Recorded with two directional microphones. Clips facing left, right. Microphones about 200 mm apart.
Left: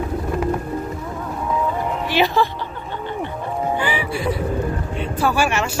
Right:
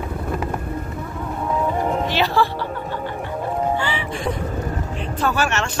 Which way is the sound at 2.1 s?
15° left (ahead or behind).